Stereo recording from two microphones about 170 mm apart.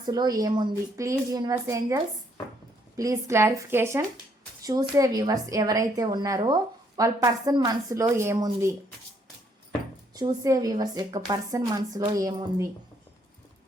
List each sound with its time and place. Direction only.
0.0 s a woman's voice: 25° right (ahead or behind)
10.2 s a woman's voice: 20° right (ahead or behind)